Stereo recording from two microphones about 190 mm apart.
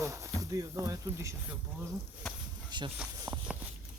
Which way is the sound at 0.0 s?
15° right (ahead or behind).